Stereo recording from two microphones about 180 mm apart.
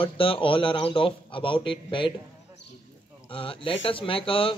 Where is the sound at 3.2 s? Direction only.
30° left (ahead or behind).